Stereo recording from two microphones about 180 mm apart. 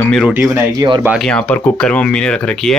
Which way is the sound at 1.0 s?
Centre (ahead or behind).